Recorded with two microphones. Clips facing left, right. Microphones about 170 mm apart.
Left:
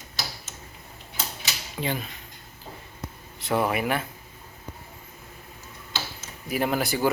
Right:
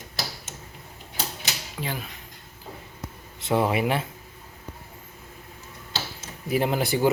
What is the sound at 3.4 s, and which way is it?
Speech, 25° right (ahead or behind).